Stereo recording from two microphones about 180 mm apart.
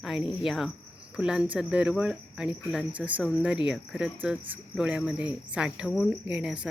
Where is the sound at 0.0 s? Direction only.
Centre (ahead or behind).